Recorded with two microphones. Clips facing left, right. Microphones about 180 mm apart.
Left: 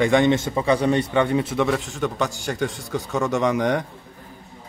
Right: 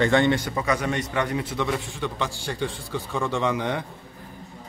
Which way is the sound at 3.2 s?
15° left (ahead or behind).